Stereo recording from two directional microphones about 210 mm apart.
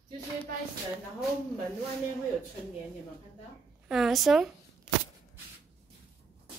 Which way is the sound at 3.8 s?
Centre (ahead or behind).